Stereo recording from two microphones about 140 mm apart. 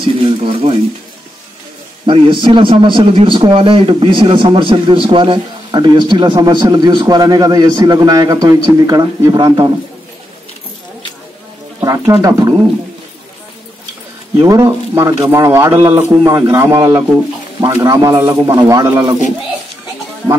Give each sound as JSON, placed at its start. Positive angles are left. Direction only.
{"t": 0.2, "sound": "speech", "side_deg": -40}
{"t": 2.0, "sound": "a man's voice", "side_deg": -40}
{"t": 11.8, "sound": "a man's voice", "side_deg": -25}
{"t": 14.4, "sound": "a man's voice", "side_deg": -25}